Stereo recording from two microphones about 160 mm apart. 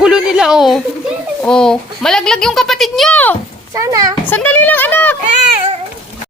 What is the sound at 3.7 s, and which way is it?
Speech, 20° right (ahead or behind).